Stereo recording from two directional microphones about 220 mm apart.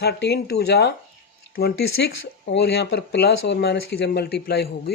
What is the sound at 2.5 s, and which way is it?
Speech, 50° left (ahead or behind).